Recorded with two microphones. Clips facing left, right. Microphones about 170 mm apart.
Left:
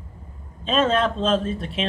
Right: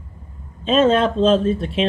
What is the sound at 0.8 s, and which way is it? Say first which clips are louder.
Speech: right 6 dB; 35° right (ahead or behind).